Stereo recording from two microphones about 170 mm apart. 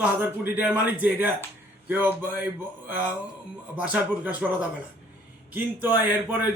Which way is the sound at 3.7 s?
10° right (ahead or behind).